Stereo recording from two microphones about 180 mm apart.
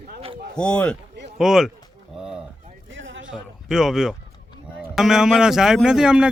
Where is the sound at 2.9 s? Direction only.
90° right.